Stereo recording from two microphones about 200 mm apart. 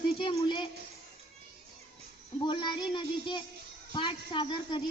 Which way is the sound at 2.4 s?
25° left (ahead or behind).